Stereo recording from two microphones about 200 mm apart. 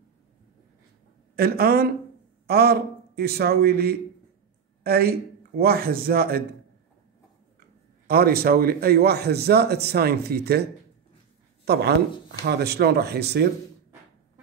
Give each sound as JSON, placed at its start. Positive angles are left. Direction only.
{"t": 1.3, "sound": "a man's voice", "side_deg": -50}
{"t": 8.1, "sound": "a man's voice", "side_deg": -50}